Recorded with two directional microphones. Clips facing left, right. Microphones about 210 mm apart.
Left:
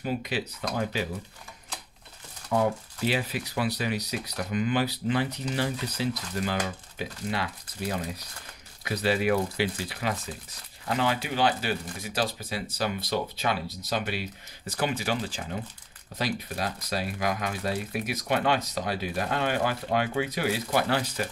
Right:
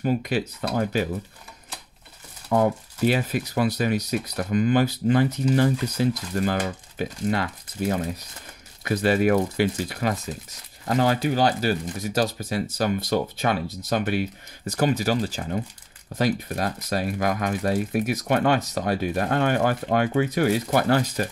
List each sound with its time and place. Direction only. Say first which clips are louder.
0.0 s speech: right 6 dB; 50° right (ahead or behind)
2.5 s speech: right 4 dB; 45° right (ahead or behind)